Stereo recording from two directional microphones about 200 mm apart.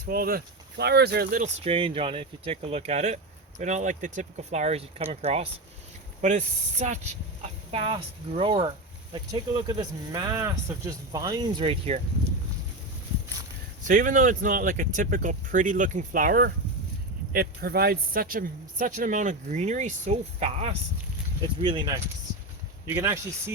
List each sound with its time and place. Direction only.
0.0 s speech: 45° right (ahead or behind)
1.6 s speech: 30° right (ahead or behind)
13.8 s speech: 45° right (ahead or behind); by 23.2 s 15° right (ahead or behind)